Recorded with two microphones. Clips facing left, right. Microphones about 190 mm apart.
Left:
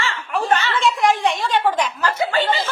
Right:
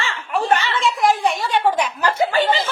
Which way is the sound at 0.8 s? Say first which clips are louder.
Even; centre (ahead or behind).